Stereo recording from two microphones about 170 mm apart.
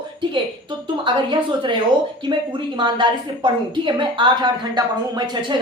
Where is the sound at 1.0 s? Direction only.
30° right (ahead or behind).